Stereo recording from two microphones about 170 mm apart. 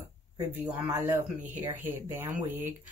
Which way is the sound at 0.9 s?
15° right (ahead or behind).